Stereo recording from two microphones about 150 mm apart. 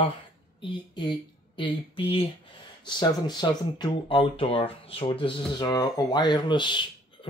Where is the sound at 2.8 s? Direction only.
30° left (ahead or behind).